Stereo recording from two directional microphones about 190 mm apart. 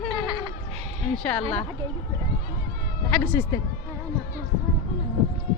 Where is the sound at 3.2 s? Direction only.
5° left (ahead or behind).